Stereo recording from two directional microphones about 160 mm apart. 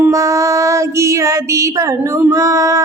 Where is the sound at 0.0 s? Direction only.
20° right (ahead or behind).